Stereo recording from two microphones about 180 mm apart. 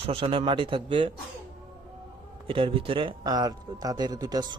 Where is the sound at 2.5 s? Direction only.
30° right (ahead or behind).